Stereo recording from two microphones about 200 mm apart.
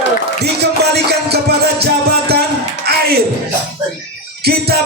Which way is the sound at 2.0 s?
50° right (ahead or behind).